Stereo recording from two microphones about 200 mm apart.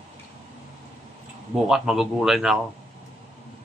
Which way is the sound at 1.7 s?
Centre (ahead or behind).